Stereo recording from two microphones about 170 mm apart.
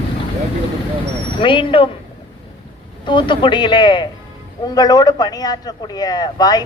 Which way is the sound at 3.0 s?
30° left (ahead or behind).